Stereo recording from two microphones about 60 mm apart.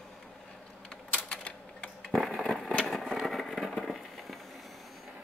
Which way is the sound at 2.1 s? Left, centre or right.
Centre.